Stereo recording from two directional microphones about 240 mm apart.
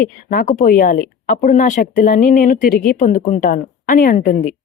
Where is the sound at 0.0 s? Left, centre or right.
Left.